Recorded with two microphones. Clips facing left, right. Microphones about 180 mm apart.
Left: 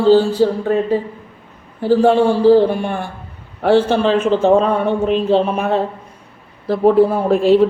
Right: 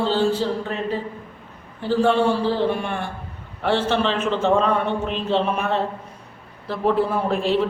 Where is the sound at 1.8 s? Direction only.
40° left (ahead or behind).